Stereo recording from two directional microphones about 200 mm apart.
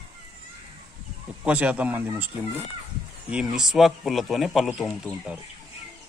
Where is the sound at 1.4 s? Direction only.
5° right (ahead or behind).